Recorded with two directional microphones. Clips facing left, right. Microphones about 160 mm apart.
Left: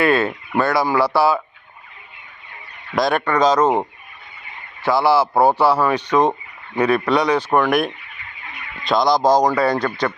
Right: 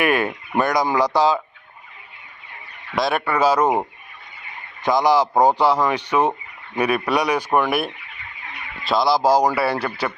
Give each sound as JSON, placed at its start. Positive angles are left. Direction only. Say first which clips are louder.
{"t": 0.0, "sound": "a man's voice", "louder": "left 3 dB", "side_deg": -15}
{"t": 2.9, "sound": "a man's voice", "louder": "left 3 dB", "side_deg": 0}